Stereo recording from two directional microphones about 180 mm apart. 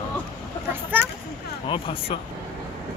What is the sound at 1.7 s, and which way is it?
Speech, 30° left (ahead or behind).